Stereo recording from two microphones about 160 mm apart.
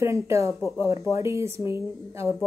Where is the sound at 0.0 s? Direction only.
15° right (ahead or behind).